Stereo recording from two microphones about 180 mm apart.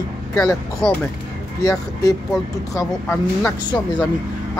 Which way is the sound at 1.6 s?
20° left (ahead or behind).